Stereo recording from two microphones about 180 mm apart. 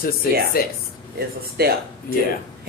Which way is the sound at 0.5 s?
55° left (ahead or behind).